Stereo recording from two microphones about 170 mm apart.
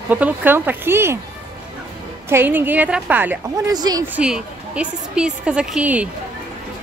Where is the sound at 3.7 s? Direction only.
25° right (ahead or behind).